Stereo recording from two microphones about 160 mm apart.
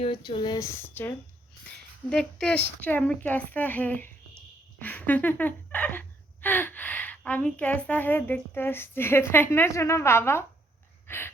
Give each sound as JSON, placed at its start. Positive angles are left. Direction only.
{"t": 0.3, "sound": "speech", "side_deg": 30}
{"t": 2.0, "sound": "speech", "side_deg": 5}
{"t": 11.0, "sound": "gasp", "side_deg": 15}